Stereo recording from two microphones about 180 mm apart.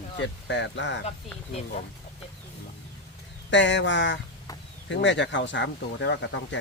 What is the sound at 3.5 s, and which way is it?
Speech, 85° left.